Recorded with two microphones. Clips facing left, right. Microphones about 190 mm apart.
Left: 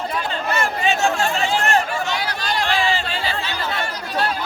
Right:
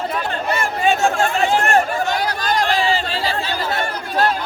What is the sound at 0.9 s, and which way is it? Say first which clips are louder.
Chatter: right 4 dB; 50° right (ahead or behind).